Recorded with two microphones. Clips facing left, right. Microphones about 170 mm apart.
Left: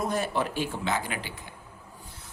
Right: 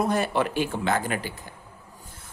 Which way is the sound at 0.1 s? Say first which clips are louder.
Right 4 dB; 70° right (ahead or behind).